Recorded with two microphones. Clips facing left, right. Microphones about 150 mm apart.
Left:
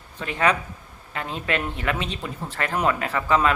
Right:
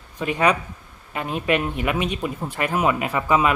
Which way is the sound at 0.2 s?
15° right (ahead or behind).